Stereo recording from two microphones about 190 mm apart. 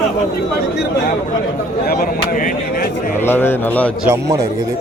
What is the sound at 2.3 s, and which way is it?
Speech, 45° left (ahead or behind).